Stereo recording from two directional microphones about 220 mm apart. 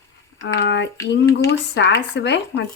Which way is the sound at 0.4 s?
55° left (ahead or behind).